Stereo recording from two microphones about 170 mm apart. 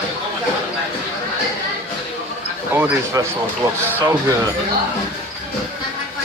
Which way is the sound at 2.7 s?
15° right (ahead or behind).